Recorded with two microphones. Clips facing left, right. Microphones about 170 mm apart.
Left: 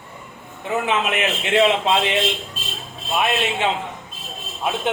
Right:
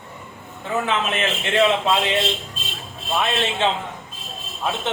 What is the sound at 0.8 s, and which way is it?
A man's voice, 15° left (ahead or behind).